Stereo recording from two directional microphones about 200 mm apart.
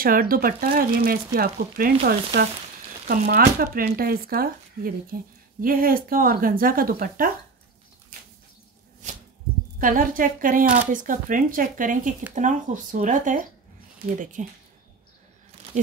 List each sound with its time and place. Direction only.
0.0 s speech: 45° right (ahead or behind)
9.8 s speech: 45° right (ahead or behind)
15.7 s speech: 35° right (ahead or behind)